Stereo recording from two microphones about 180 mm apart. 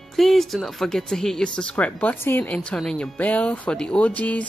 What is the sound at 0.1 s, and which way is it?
Speech, centre (ahead or behind).